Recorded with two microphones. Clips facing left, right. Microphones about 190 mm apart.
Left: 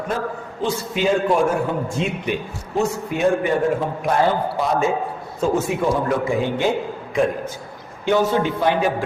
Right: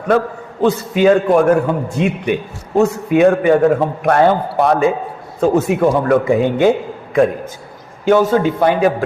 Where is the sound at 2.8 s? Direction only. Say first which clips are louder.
Right 8 dB; 65° right (ahead or behind).